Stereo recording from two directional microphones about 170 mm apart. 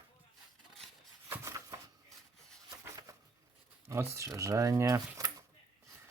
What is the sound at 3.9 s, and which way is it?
Speech, 15° right (ahead or behind).